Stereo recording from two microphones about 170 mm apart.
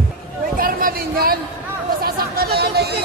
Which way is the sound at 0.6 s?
60° right (ahead or behind).